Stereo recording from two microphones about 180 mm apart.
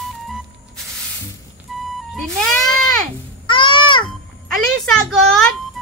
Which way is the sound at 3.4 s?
25° left (ahead or behind).